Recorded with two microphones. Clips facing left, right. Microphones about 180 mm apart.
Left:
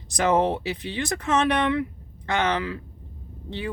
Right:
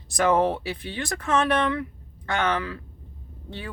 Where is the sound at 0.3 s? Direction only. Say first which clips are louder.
Left 1 dB; 20° left (ahead or behind).